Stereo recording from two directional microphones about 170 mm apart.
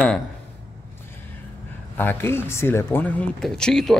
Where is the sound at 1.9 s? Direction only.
10° left (ahead or behind).